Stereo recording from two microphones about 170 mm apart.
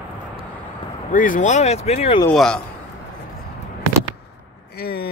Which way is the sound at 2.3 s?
5° left (ahead or behind).